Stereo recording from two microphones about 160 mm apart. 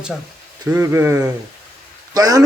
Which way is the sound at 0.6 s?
15° right (ahead or behind).